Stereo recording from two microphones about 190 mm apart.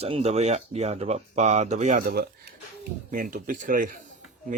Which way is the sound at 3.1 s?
45° right (ahead or behind).